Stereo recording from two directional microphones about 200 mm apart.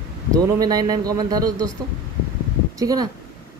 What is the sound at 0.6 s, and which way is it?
Speech, 20° right (ahead or behind).